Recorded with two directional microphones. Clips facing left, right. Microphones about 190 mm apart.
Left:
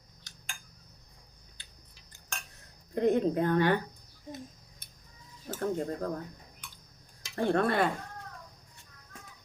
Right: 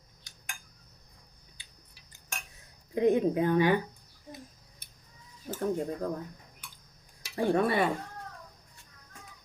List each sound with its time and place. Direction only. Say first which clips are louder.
1.5 s a sound: left 1 dB; 10° right (ahead or behind)
2.9 s speech: right 1 dB; 10° right (ahead or behind)
5.5 s speech: right 1 dB; 10° right (ahead or behind)
7.3 s speech: right 1 dB; 10° right (ahead or behind)